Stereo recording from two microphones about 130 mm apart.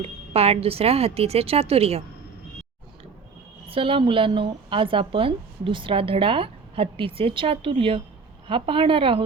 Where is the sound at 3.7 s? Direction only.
45° right (ahead or behind).